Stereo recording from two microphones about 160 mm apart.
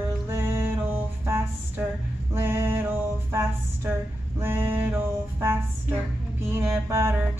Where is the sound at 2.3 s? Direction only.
15° right (ahead or behind).